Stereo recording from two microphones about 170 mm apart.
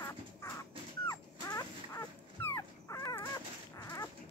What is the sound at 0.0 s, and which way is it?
Dog, 15° left (ahead or behind).